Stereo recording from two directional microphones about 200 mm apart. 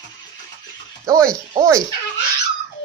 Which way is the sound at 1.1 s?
15° right (ahead or behind).